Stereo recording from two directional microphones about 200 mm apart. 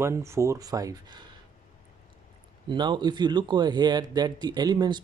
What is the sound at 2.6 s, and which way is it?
Speech, 20° right (ahead or behind).